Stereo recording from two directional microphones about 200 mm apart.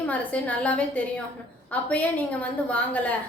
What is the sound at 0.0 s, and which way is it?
A woman's voice, 5° left (ahead or behind).